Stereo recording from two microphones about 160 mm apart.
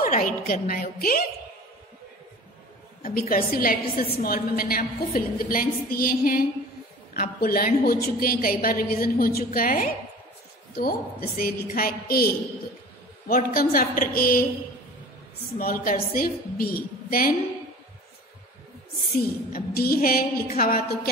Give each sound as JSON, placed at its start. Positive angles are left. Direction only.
{"t": 0.0, "sound": "a woman's voice", "side_deg": 60}
{"t": 3.0, "sound": "a woman's voice", "side_deg": 65}
{"t": 15.5, "sound": "a woman's voice", "side_deg": 65}
{"t": 19.5, "sound": "a woman's voice", "side_deg": 65}